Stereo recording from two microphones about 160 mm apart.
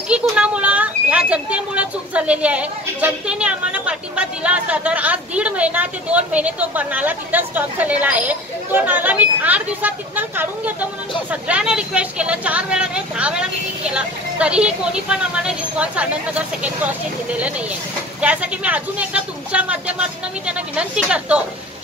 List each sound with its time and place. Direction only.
0.1 s speech: 5° right (ahead or behind)